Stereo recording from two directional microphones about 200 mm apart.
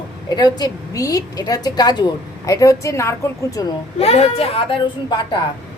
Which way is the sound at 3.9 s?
30° left (ahead or behind).